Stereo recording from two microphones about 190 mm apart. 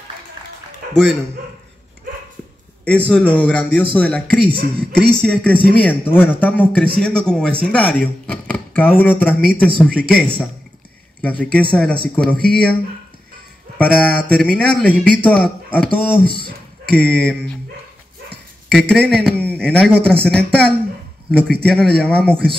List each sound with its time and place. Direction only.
3.1 s a man's voice: 5° left (ahead or behind)
13.7 s speech: 5° left (ahead or behind)
16.3 s speech: 50° right (ahead or behind)
16.8 s a man's voice: 5° left (ahead or behind)